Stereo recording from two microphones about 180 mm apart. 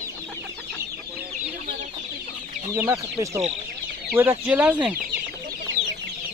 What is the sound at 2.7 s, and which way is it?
Speech, 20° right (ahead or behind).